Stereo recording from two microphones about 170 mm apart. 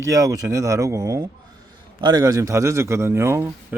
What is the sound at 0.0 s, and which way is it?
A man's voice, 20° right (ahead or behind).